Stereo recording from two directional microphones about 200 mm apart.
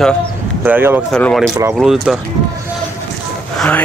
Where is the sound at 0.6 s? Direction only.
10° right (ahead or behind).